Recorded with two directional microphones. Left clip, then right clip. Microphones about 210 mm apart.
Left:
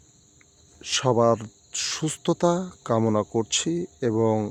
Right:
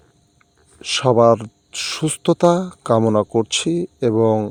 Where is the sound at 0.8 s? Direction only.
20° right (ahead or behind).